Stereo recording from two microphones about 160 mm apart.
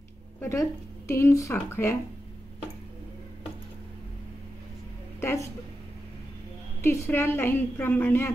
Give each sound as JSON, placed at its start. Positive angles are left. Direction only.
{"t": 0.4, "sound": "speech", "side_deg": 15}
{"t": 5.2, "sound": "a woman's voice", "side_deg": 15}
{"t": 6.8, "sound": "speech", "side_deg": 15}